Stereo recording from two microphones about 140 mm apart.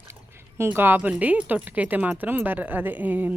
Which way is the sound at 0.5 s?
15° right (ahead or behind).